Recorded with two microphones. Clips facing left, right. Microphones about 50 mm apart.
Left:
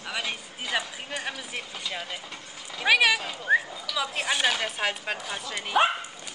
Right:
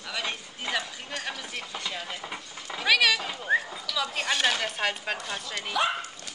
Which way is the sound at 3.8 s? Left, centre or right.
Centre.